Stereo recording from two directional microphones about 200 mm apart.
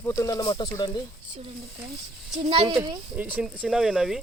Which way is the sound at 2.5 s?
25° right (ahead or behind).